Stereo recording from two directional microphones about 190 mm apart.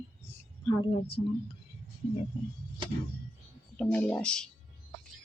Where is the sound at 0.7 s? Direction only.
25° left (ahead or behind).